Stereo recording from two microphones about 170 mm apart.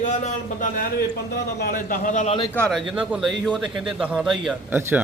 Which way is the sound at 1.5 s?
60° left (ahead or behind).